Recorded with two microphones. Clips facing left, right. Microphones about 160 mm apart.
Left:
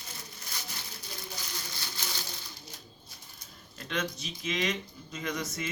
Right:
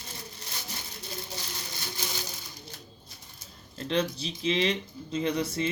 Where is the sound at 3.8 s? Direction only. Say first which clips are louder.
Right 6 dB; 30° right (ahead or behind).